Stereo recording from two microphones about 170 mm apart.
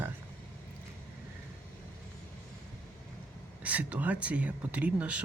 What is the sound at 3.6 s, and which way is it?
Speech, 10° right (ahead or behind).